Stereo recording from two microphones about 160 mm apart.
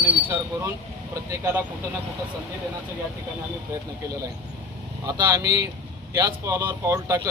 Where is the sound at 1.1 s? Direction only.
20° right (ahead or behind).